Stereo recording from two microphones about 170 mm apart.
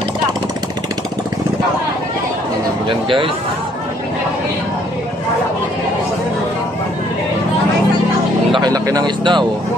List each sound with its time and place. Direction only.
2.9 s speech: 30° right (ahead or behind)
8.5 s speech: 25° right (ahead or behind)